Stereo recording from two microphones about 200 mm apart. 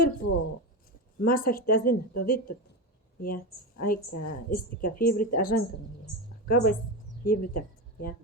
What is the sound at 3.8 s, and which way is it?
A woman's voice, 45° left (ahead or behind).